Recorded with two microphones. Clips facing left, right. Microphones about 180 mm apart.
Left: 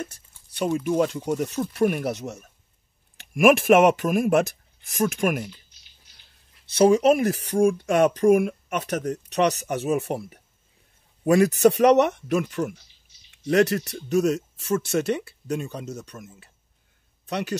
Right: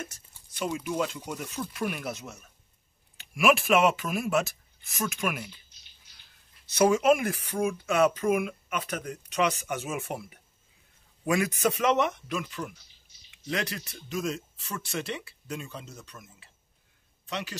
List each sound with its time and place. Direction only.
0.7 s speech: 45° left (ahead or behind)
3.3 s speech: 50° left (ahead or behind)
6.6 s speech: 30° left (ahead or behind)